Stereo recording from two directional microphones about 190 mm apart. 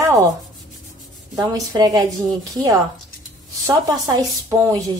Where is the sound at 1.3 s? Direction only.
20° right (ahead or behind).